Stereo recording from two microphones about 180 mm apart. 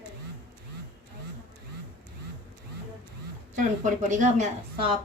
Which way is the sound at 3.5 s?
45° right (ahead or behind).